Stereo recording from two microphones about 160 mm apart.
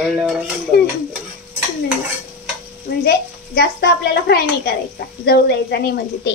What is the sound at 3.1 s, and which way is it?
A woman's voice, 90° left.